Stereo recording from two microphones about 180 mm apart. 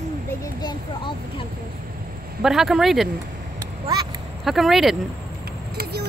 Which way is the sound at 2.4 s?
Centre (ahead or behind).